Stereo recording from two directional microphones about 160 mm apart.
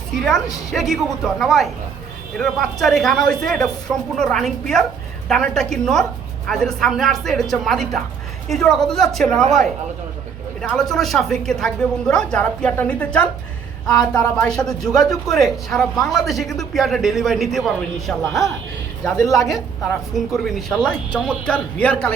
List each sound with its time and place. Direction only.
0.7 s a woman's voice: centre (ahead or behind)
19.1 s a woman's voice: 20° left (ahead or behind)
20.1 s a woman's voice: centre (ahead or behind)